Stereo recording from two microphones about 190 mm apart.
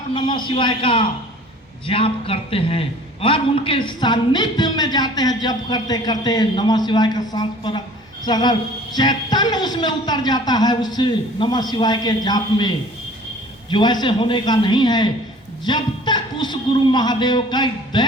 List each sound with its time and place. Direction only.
0.1 s a man's voice: 25° left (ahead or behind)